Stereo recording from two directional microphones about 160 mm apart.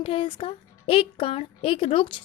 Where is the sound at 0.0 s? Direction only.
35° left (ahead or behind).